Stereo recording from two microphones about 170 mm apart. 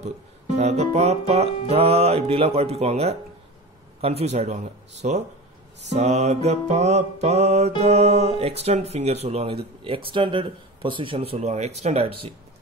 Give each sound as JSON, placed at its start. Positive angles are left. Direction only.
{"t": 0.6, "sound": "music", "side_deg": -40}